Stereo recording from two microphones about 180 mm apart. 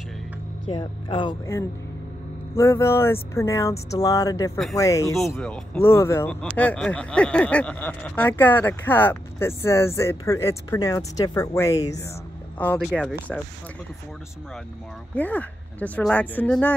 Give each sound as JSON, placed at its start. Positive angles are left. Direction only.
{"t": 0.7, "sound": "speech", "side_deg": 30}
{"t": 2.5, "sound": "speech", "side_deg": 15}
{"t": 5.4, "sound": "speech", "side_deg": 5}
{"t": 15.1, "sound": "speech", "side_deg": 10}